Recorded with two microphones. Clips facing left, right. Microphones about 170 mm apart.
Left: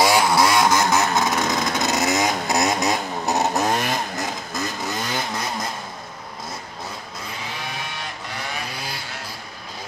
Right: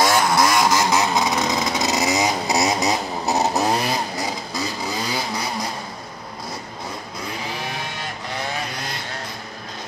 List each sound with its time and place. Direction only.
0.0 s vehicle: 5° left (ahead or behind); by 1.3 s 10° right (ahead or behind)
1.3 s vehicle: centre (ahead or behind)